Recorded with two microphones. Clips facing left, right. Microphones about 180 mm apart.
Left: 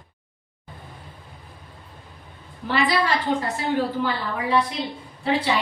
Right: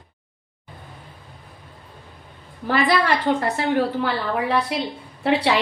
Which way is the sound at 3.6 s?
65° right (ahead or behind).